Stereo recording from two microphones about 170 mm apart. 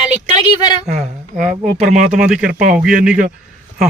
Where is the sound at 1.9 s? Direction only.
50° right (ahead or behind).